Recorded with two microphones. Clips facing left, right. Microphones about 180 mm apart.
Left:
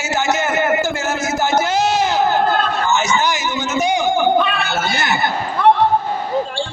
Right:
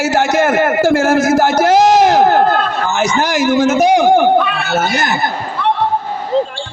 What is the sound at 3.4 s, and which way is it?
Speech, 65° right (ahead or behind).